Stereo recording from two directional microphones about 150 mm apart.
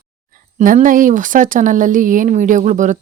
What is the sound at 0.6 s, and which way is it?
Speech, 60° right (ahead or behind).